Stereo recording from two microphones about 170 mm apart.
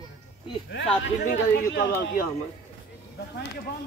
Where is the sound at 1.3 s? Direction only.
80° left.